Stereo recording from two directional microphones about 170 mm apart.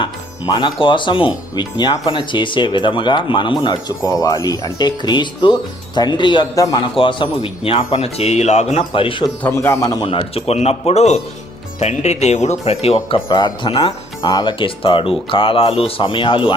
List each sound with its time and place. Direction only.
0.0 s speech: 25° left (ahead or behind)
9.4 s a man's voice: 15° left (ahead or behind)
10.1 s speech: 35° left (ahead or behind)